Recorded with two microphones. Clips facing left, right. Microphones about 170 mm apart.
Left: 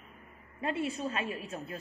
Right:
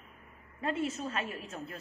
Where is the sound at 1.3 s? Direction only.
20° left (ahead or behind).